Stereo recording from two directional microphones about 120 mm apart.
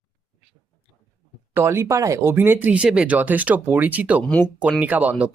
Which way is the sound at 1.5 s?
20° right (ahead or behind).